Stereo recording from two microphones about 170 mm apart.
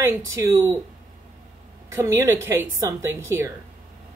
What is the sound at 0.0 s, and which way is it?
Speech, 15° right (ahead or behind).